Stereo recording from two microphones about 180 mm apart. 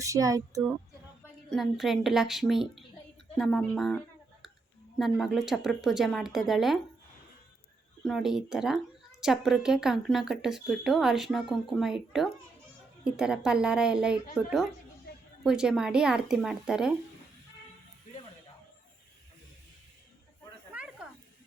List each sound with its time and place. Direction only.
0.0 s speech: 20° right (ahead or behind)
1.5 s speech: centre (ahead or behind)
8.0 s speech: centre (ahead or behind)